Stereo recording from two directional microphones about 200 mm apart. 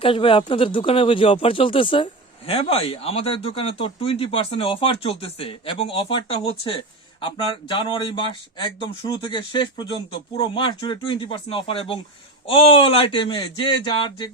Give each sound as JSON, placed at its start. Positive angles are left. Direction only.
{"t": 0.0, "sound": "speech", "side_deg": 25}